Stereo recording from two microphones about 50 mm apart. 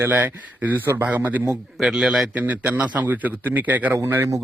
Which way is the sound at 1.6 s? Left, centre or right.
Centre.